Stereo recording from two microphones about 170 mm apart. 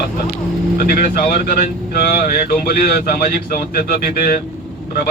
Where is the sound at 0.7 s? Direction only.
65° left (ahead or behind).